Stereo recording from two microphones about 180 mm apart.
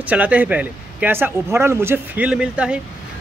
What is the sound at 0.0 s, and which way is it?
Speech, 10° right (ahead or behind).